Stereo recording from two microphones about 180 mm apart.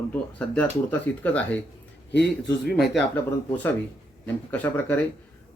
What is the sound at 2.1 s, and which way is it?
Speech, 70° left (ahead or behind).